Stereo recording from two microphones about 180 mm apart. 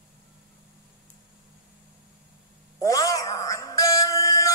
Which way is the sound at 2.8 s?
20° left (ahead or behind).